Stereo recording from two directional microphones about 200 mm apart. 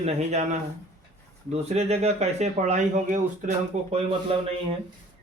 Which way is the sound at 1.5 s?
30° right (ahead or behind).